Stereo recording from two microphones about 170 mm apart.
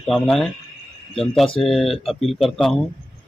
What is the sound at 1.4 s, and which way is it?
Speech, 35° left (ahead or behind).